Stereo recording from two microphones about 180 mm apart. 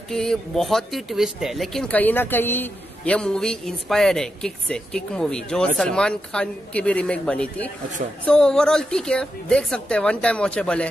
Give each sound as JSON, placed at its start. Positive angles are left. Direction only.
{"t": 0.1, "sound": "speech", "side_deg": 5}